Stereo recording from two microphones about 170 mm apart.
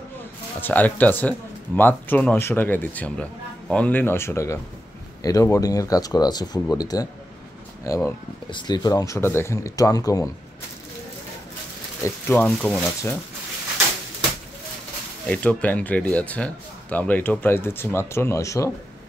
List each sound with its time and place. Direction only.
0.6 s speech: 10° left (ahead or behind)
12.0 s speech: 10° left (ahead or behind)
15.2 s speech: 5° left (ahead or behind)